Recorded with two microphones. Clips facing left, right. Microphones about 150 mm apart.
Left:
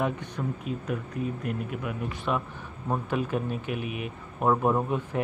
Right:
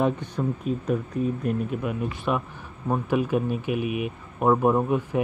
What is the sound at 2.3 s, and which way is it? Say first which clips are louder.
Speech: right 1 dB; 15° right (ahead or behind).